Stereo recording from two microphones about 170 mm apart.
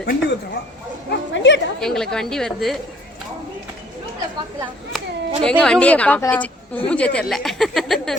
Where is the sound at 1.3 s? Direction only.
90° left.